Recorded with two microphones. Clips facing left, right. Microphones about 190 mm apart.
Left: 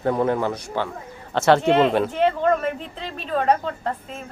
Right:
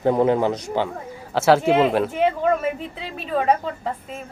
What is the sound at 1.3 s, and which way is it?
Speech, 5° right (ahead or behind).